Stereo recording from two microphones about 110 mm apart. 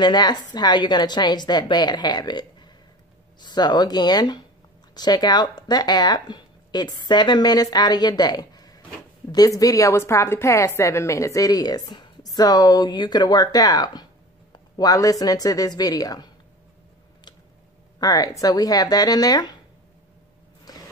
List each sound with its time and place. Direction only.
0.0 s a woman's voice: 40° left (ahead or behind)
17.9 s a woman's voice: 35° left (ahead or behind)
20.7 s a sound: 35° left (ahead or behind)